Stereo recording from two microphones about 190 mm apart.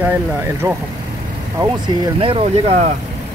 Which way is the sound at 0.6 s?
20° right (ahead or behind).